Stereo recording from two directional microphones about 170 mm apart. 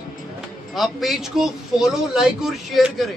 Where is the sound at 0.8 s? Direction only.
Centre (ahead or behind).